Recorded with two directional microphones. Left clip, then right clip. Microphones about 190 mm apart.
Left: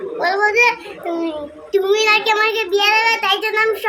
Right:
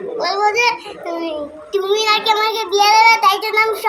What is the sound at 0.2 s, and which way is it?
A child's voice, 10° left (ahead or behind).